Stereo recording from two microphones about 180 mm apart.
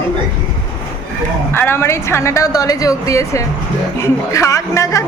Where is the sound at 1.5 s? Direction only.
15° left (ahead or behind).